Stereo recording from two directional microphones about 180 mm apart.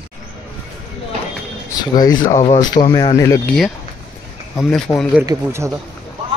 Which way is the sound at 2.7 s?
30° left (ahead or behind).